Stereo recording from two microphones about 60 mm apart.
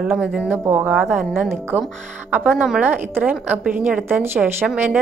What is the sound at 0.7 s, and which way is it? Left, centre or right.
Speech, right.